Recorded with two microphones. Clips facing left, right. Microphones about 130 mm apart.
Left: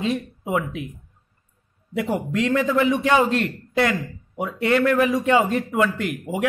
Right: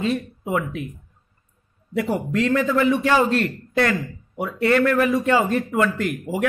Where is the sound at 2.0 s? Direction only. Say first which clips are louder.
Right 1 dB; 20° left (ahead or behind).